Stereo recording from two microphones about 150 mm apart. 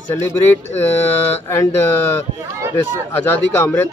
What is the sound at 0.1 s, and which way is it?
Speech, 15° left (ahead or behind).